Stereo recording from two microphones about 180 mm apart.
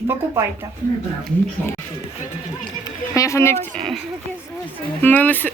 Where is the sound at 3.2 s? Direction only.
15° left (ahead or behind).